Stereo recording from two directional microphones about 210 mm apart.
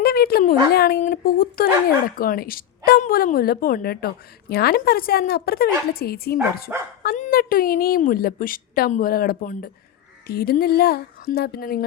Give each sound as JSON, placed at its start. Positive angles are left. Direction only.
{"t": 0.0, "sound": "a woman's voice", "side_deg": 45}